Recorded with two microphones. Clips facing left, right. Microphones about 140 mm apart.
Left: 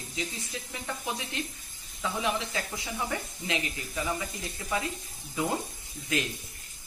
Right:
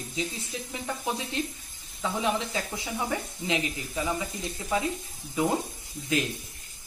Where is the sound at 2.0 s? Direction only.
20° right (ahead or behind).